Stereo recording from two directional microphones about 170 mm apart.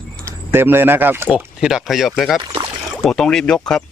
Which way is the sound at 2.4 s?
25° right (ahead or behind).